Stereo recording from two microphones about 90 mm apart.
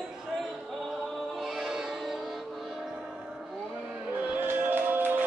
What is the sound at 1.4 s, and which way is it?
Music, 5° right (ahead or behind).